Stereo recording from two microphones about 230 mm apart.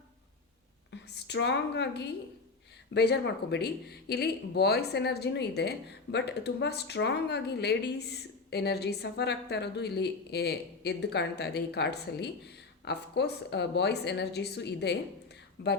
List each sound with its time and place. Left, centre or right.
0.9 s speech: left